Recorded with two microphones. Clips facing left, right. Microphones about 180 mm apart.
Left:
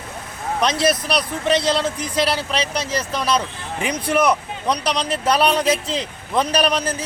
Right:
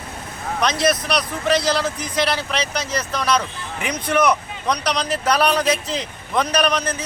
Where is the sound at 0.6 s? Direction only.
30° left (ahead or behind).